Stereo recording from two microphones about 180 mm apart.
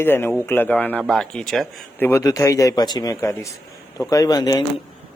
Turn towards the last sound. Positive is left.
turn(degrees=20)  # may be behind; listen again after turning